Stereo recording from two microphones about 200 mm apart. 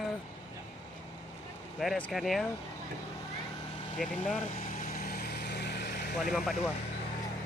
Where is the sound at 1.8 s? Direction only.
Centre (ahead or behind).